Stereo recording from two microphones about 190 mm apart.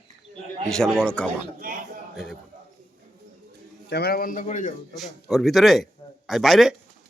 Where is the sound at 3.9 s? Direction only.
60° left (ahead or behind); by 4.7 s 45° left (ahead or behind).